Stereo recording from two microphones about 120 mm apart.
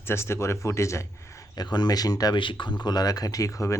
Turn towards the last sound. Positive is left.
turn(degrees=25)  # may be behind; listen again after turning